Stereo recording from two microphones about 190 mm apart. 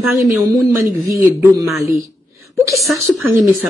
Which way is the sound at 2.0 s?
15° right (ahead or behind).